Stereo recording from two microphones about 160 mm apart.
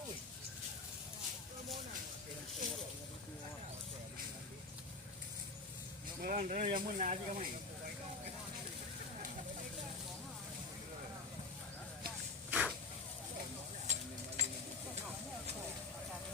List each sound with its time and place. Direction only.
6.2 s speech: 50° right (ahead or behind)
12.5 s dog: 5° right (ahead or behind)
13.8 s stir: 45° right (ahead or behind)